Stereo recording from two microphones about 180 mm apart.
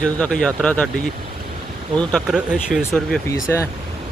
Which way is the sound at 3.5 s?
15° left (ahead or behind).